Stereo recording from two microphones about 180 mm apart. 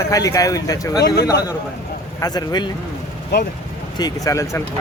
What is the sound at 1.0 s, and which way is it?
Speech, 65° left (ahead or behind).